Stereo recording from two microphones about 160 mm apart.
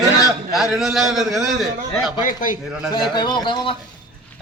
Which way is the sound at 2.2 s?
55° left (ahead or behind).